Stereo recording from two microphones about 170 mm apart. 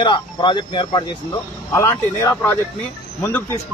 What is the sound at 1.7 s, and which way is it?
Speech, 15° left (ahead or behind).